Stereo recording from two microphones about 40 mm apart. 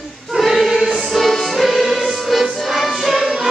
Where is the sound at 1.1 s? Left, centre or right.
Centre.